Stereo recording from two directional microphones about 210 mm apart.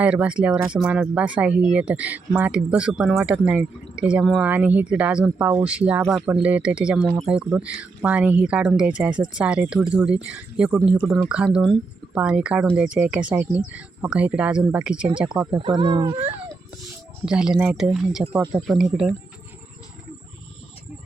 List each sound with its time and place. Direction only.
0.0 s speech: 5° right (ahead or behind)
15.5 s speech: 20° right (ahead or behind)
17.2 s speech: 5° right (ahead or behind)